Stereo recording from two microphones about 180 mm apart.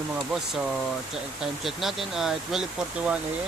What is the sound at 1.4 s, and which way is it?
Speech, centre (ahead or behind).